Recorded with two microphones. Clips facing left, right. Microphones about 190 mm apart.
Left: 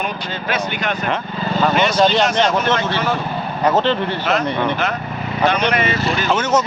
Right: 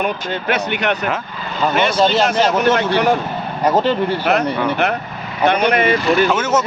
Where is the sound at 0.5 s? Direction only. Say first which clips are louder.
Right 3 dB; 65° right (ahead or behind).